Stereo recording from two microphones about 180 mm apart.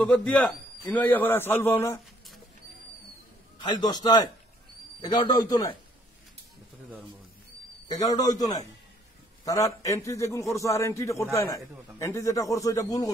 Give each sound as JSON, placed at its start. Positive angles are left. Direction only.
{"t": 0.0, "sound": "a man's voice", "side_deg": 5}
{"t": 3.5, "sound": "a man's voice", "side_deg": 25}
{"t": 8.0, "sound": "a man's voice", "side_deg": 20}